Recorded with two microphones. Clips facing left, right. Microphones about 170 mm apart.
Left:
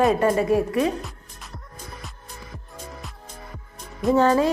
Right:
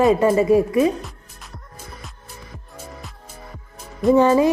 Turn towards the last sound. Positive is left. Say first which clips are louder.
# right 4 dB
turn(degrees=-10)  # may be behind; listen again after turning